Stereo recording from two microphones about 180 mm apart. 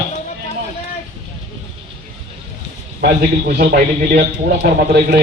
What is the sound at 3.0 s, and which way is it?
A man's voice, 55° right (ahead or behind).